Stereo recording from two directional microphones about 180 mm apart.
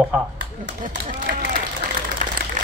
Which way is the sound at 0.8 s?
45° right (ahead or behind).